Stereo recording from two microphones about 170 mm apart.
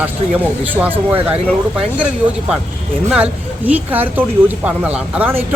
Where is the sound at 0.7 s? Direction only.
10° right (ahead or behind).